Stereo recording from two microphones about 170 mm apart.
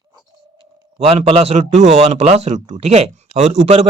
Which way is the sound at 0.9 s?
35° right (ahead or behind).